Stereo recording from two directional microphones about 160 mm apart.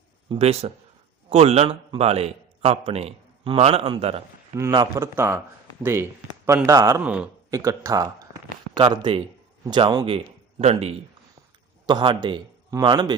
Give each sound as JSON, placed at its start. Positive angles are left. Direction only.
{"t": 0.3, "sound": "a man's voice", "side_deg": -40}
{"t": 4.5, "sound": "speech", "side_deg": -25}
{"t": 7.0, "sound": "speech", "side_deg": -5}
{"t": 7.5, "sound": "speech", "side_deg": -20}
{"t": 10.6, "sound": "speech", "side_deg": -40}
{"t": 11.9, "sound": "a man's voice", "side_deg": -25}